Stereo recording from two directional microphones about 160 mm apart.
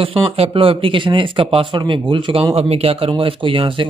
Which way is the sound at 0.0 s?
35° right (ahead or behind).